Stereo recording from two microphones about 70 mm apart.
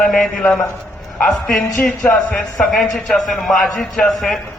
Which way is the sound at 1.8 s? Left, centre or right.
Left.